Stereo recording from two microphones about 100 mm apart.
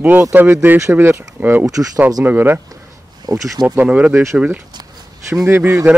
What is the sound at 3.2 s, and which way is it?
Speech, 40° right (ahead or behind).